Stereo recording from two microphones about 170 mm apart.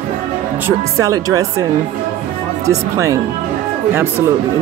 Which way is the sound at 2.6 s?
15° right (ahead or behind).